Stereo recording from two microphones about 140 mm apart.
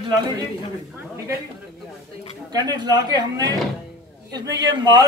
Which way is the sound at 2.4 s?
30° right (ahead or behind).